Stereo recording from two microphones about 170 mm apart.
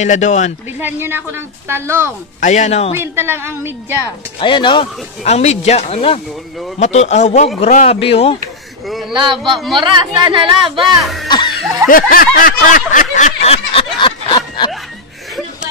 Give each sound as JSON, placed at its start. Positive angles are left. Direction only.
{"t": 0.0, "sound": "a man's voice", "side_deg": 45}
{"t": 0.7, "sound": "a woman's voice", "side_deg": -10}
{"t": 2.4, "sound": "a man's voice", "side_deg": 45}
{"t": 3.0, "sound": "a woman's voice", "side_deg": -15}
{"t": 4.4, "sound": "a man's voice", "side_deg": 30}
{"t": 5.2, "sound": "speech", "side_deg": 40}
{"t": 9.1, "sound": "a woman's voice", "side_deg": -30}
{"t": 10.8, "sound": "speech", "side_deg": 0}
{"t": 11.2, "sound": "a man's voice", "side_deg": 25}
{"t": 11.9, "sound": "a sound", "side_deg": 55}